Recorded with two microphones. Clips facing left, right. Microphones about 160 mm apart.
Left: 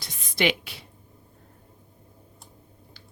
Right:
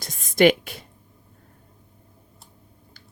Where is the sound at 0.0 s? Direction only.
45° right (ahead or behind).